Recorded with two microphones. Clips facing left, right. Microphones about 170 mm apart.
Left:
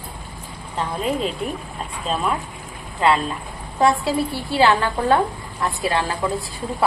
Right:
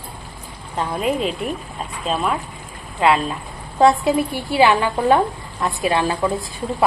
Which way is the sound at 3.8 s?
20° right (ahead or behind).